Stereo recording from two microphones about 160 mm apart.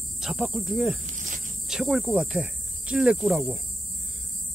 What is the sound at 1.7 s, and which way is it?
Speech, 5° right (ahead or behind).